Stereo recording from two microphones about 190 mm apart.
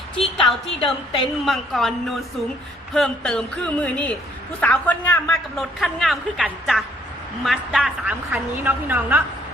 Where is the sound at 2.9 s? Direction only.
5° left (ahead or behind).